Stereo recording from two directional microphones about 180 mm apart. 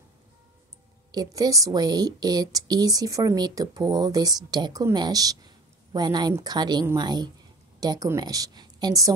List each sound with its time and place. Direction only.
1.1 s speech: 20° right (ahead or behind)